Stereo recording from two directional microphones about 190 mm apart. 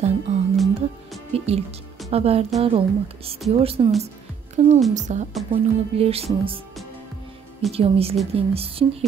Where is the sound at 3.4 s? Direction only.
30° right (ahead or behind).